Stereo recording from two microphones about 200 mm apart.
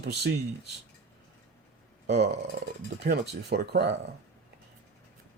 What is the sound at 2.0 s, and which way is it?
Speech, 55° right (ahead or behind).